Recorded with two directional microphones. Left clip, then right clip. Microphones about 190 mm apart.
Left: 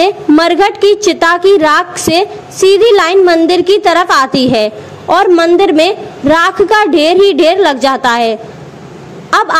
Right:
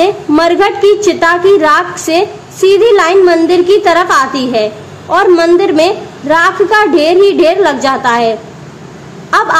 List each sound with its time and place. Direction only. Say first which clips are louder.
0.0 s a woman's voice: left 1 dB; 30° left (ahead or behind)